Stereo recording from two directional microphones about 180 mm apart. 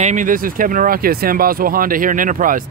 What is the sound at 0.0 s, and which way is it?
Speech, 45° right (ahead or behind).